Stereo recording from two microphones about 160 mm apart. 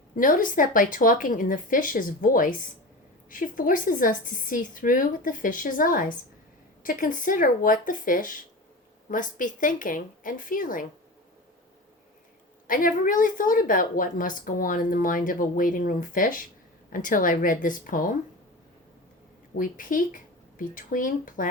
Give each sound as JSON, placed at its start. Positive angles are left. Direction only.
{"t": 0.2, "sound": "a woman's voice", "side_deg": 60}
{"t": 12.6, "sound": "a woman's voice", "side_deg": 60}
{"t": 19.5, "sound": "a woman's voice", "side_deg": 60}